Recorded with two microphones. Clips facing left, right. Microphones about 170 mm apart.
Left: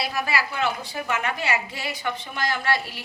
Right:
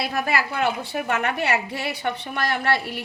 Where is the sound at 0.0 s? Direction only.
55° right (ahead or behind).